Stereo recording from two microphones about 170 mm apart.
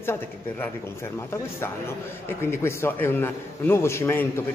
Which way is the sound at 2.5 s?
15° left (ahead or behind).